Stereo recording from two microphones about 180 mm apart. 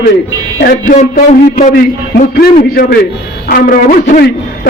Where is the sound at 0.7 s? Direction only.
45° left (ahead or behind).